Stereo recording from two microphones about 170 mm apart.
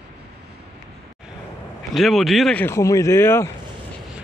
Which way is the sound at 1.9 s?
Centre (ahead or behind).